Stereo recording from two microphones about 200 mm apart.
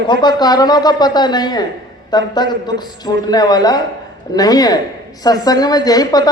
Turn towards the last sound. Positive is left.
turn(degrees=20)  # may be behind; listen again after turning